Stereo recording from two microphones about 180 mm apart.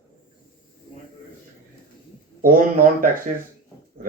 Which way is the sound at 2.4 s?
50° right (ahead or behind).